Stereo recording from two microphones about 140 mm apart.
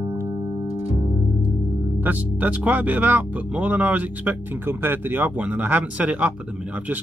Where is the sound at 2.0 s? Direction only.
10° right (ahead or behind).